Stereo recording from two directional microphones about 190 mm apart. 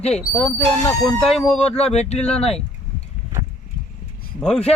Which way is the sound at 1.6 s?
35° left (ahead or behind).